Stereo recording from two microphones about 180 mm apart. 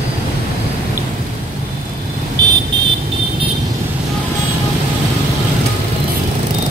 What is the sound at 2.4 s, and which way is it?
Vehicle, 20° right (ahead or behind).